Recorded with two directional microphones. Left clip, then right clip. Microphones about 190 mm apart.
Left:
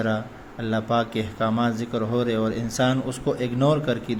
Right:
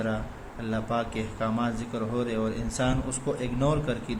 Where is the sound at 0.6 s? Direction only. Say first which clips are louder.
Left 6 dB; 25° left (ahead or behind).